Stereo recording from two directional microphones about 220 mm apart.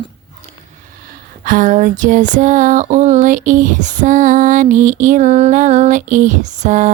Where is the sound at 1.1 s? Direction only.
40° right (ahead or behind).